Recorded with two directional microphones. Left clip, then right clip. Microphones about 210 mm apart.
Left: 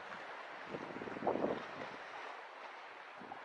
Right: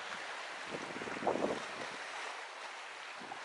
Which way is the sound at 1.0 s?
20° left (ahead or behind).